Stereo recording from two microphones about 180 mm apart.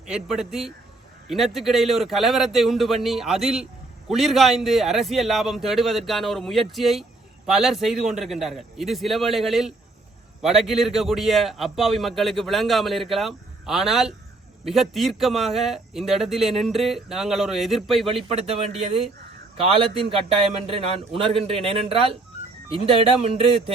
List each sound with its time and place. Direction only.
0.0 s a man's voice: 5° right (ahead or behind)
18.1 s a man's voice: 30° right (ahead or behind)